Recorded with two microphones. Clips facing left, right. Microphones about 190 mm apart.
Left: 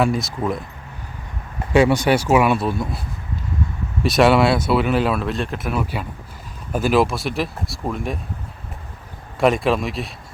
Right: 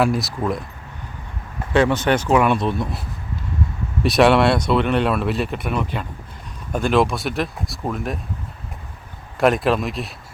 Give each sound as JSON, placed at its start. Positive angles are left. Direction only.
{"t": 0.0, "sound": "speech", "side_deg": 0}
{"t": 1.7, "sound": "speech", "side_deg": 10}
{"t": 4.0, "sound": "speech", "side_deg": 0}
{"t": 9.4, "sound": "speech", "side_deg": 0}